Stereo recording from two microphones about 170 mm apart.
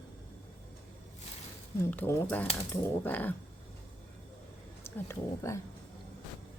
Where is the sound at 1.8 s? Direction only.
10° left (ahead or behind).